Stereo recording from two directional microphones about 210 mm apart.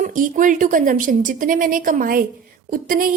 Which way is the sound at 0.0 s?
40° right (ahead or behind).